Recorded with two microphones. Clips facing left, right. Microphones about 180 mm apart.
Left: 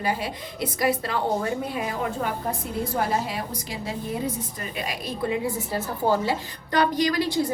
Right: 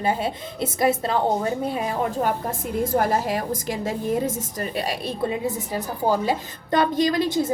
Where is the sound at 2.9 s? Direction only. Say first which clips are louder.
Right 4 dB; 45° right (ahead or behind).